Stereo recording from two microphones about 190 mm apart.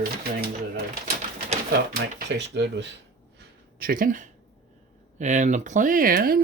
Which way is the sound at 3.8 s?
45° right (ahead or behind).